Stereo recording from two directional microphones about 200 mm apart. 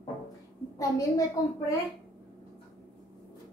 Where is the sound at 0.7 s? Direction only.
15° left (ahead or behind).